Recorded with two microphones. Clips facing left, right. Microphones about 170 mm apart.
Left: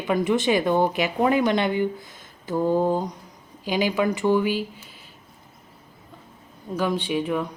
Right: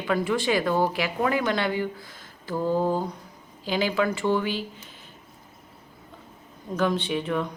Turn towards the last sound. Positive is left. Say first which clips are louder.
# left 2 dB
turn(degrees=10)  # may be behind; listen again after turning